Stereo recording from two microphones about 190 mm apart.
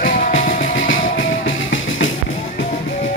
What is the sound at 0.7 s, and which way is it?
Music, 90° left.